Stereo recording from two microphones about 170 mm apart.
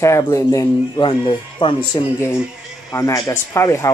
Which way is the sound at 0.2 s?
20° left (ahead or behind).